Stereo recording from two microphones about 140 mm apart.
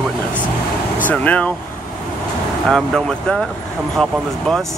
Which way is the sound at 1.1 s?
10° left (ahead or behind).